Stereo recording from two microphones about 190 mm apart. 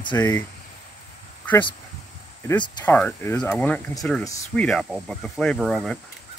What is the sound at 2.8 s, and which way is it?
Speech, 5° left (ahead or behind).